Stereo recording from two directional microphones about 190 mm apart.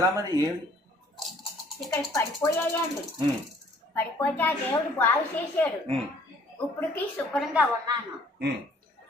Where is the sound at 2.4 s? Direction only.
20° left (ahead or behind).